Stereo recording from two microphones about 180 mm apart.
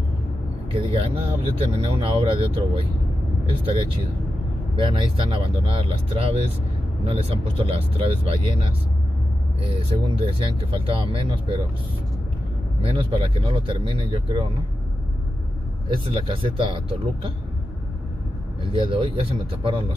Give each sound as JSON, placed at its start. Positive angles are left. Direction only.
{"t": 0.9, "sound": "speech", "side_deg": -30}
{"t": 9.8, "sound": "speech", "side_deg": -30}
{"t": 12.8, "sound": "speech", "side_deg": -30}
{"t": 15.9, "sound": "speech", "side_deg": -30}
{"t": 18.7, "sound": "speech", "side_deg": -30}